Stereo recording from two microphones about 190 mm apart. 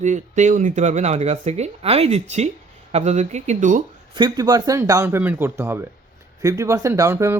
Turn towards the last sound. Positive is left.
turn(degrees=-15)  # may be behind; listen again after turning